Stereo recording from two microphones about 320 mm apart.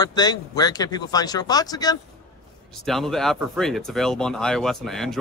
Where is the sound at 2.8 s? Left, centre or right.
Centre.